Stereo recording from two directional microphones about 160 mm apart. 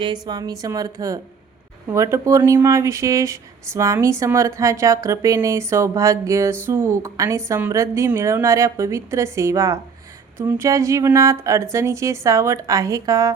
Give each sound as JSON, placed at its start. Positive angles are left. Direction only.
{"t": 0.0, "sound": "speech", "side_deg": -25}